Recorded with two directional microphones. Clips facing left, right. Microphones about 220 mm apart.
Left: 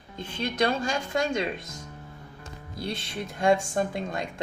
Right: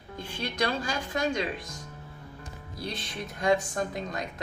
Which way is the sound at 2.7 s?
25° left (ahead or behind).